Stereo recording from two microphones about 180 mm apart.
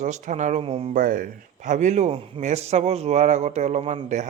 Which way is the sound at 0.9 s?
50° right (ahead or behind).